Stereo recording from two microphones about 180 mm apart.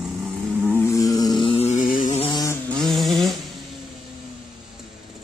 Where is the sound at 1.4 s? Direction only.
30° left (ahead or behind).